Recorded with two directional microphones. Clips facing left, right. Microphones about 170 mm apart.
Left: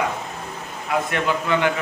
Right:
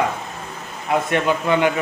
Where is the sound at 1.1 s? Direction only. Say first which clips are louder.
Right 4 dB; 20° right (ahead or behind).